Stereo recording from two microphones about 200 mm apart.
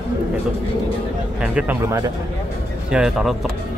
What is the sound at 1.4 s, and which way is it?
Speech, 5° right (ahead or behind).